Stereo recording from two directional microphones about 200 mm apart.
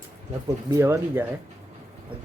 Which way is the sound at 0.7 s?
10° right (ahead or behind).